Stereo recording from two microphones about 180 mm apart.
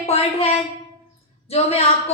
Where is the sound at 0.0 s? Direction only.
35° left (ahead or behind).